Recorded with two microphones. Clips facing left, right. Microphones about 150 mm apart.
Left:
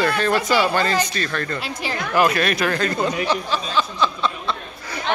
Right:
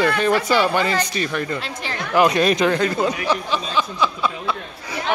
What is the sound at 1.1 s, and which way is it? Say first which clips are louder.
Speech: right 2 dB; 15° right (ahead or behind).